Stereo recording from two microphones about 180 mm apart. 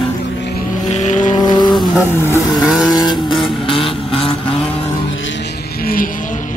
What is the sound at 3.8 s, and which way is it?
Vehicle, 30° left (ahead or behind).